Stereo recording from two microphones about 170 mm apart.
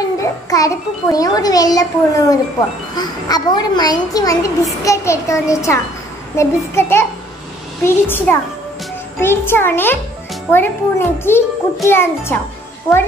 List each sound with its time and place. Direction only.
0.2 s a child's voice: 20° left (ahead or behind)